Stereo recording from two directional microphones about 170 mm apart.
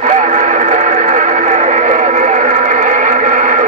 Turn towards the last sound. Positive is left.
turn(degrees=-50)  # may be behind; listen again after turning